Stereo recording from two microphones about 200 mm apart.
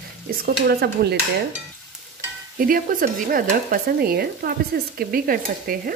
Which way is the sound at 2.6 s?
45° right (ahead or behind).